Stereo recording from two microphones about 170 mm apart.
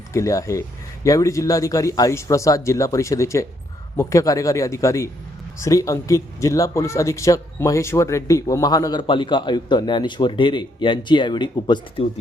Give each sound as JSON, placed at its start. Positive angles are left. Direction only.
{"t": 0.1, "sound": "speech", "side_deg": 20}